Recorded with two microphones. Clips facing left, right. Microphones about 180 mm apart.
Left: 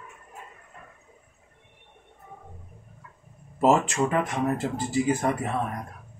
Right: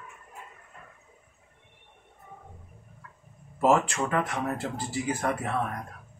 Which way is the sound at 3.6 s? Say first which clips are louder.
Left 2 dB; 20° left (ahead or behind).